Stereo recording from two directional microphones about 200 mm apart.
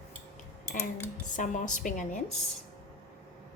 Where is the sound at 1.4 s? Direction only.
40° left (ahead or behind).